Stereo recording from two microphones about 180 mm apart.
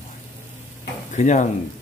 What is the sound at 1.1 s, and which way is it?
Speech, 40° left (ahead or behind).